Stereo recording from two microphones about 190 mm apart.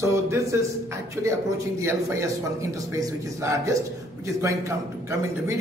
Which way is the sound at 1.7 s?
15° right (ahead or behind).